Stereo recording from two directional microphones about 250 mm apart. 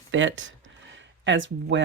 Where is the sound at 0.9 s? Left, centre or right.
Right.